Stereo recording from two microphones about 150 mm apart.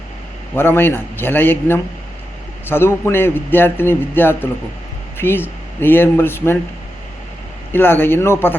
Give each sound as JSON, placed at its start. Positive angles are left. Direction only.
{"t": 0.5, "sound": "a man's voice", "side_deg": 15}
{"t": 7.7, "sound": "a man's voice", "side_deg": 15}